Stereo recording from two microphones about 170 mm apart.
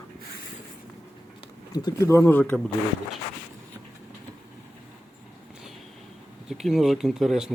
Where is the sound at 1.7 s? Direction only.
25° left (ahead or behind).